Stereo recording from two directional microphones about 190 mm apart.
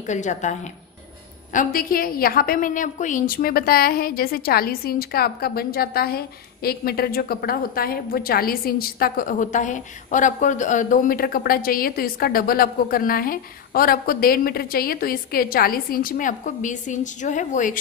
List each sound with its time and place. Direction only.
0.0 s a woman's voice: 40° left (ahead or behind)